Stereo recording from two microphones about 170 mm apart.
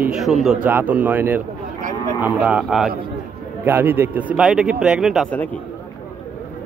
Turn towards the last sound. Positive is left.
turn(degrees=-5)  # may be behind; listen again after turning